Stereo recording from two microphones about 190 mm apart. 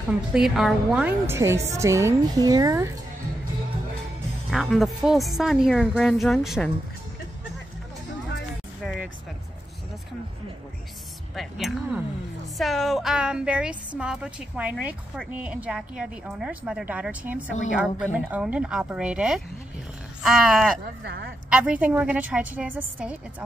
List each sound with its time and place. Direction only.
0.3 s a woman's voice: centre (ahead or behind); by 2.9 s 15° right (ahead or behind)
4.5 s speech: centre (ahead or behind)
8.8 s vehicle: centre (ahead or behind)
11.3 s speech: centre (ahead or behind)
20.8 s speech: 65° right (ahead or behind)
21.5 s a woman's voice: 5° right (ahead or behind)